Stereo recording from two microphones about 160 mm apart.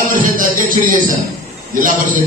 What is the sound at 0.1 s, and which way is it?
Music, 60° right (ahead or behind).